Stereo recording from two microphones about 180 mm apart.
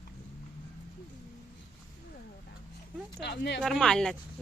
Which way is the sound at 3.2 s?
70° left (ahead or behind).